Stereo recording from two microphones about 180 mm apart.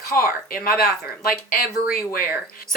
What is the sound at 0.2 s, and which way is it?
A woman's voice, 55° left (ahead or behind).